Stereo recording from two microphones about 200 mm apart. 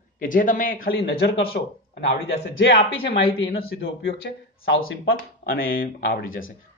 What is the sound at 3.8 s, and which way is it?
Speech, 60° left (ahead or behind).